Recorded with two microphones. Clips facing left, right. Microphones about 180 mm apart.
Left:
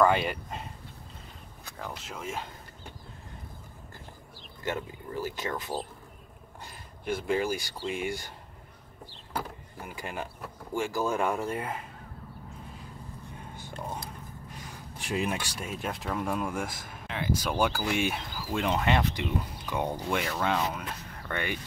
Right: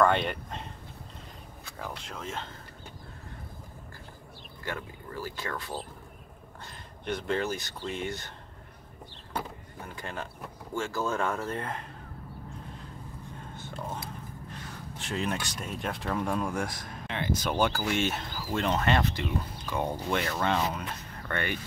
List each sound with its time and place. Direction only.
0.0 s speech: 5° left (ahead or behind)
1.8 s speech: centre (ahead or behind)
4.6 s speech: 20° left (ahead or behind)
9.3 s speech: 10° left (ahead or behind)
14.5 s speech: 10° left (ahead or behind)
21.3 s speech: 15° left (ahead or behind)